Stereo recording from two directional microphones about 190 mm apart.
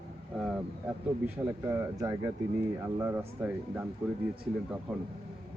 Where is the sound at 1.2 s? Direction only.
15° right (ahead or behind).